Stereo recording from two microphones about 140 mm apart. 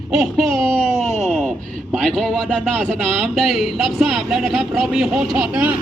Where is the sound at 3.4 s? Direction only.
Centre (ahead or behind).